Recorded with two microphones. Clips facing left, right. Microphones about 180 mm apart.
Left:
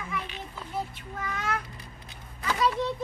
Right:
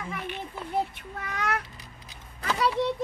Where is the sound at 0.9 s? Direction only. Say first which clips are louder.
Even; 65° right (ahead or behind).